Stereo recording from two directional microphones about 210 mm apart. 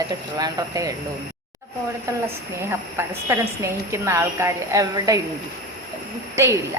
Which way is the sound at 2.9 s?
15° right (ahead or behind).